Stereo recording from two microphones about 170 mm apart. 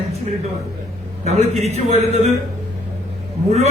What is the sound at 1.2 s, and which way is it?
Speech, 40° right (ahead or behind).